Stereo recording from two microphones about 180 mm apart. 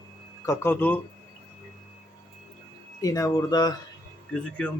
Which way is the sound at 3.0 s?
20° left (ahead or behind).